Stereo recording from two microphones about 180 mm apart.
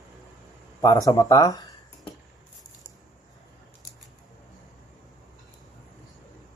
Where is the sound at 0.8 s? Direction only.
20° left (ahead or behind).